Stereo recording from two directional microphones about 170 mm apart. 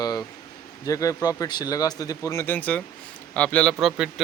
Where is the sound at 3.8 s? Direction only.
5° right (ahead or behind).